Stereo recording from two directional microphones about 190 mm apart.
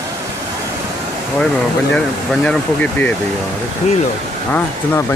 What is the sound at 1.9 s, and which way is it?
Speech, 5° left (ahead or behind).